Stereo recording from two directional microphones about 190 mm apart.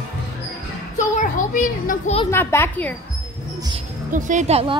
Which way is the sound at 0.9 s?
40° left (ahead or behind).